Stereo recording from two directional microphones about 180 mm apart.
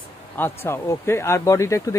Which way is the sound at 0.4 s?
15° left (ahead or behind).